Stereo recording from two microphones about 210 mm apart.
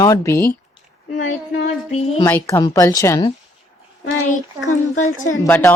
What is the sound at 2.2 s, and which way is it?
A child's voice, 10° left (ahead or behind).